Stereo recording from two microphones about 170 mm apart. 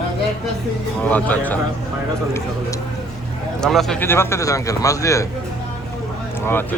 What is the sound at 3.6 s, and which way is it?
Speech, centre (ahead or behind).